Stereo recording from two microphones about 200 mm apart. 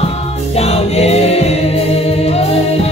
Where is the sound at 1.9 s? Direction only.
30° left (ahead or behind).